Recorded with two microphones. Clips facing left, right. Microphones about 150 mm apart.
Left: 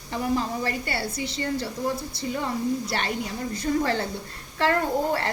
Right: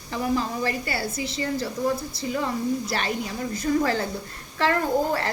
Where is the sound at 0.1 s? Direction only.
30° left (ahead or behind).